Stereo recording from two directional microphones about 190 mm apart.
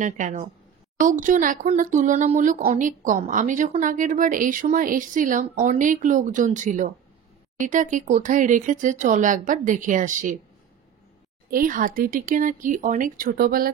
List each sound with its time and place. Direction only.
0.0 s speech: 40° right (ahead or behind)
11.5 s speech: 45° right (ahead or behind)